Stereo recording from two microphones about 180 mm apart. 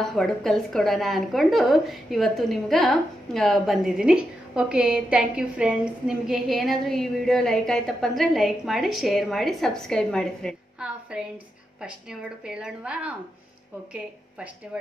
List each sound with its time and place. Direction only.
0.0 s a woman's voice: centre (ahead or behind)